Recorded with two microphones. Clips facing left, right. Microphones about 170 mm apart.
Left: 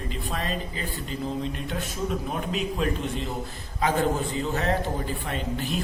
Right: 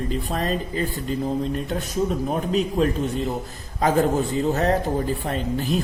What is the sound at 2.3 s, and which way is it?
A man's voice, 40° right (ahead or behind).